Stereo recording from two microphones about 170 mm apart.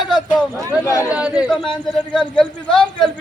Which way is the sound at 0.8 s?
20° left (ahead or behind).